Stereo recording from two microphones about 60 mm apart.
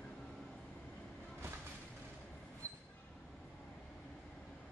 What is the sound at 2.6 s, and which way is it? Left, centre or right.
Train, right.